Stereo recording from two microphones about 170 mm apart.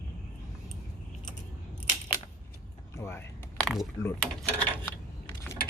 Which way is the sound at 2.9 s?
15° left (ahead or behind).